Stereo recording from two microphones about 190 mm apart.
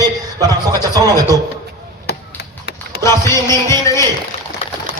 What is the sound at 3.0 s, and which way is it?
Music, 15° left (ahead or behind).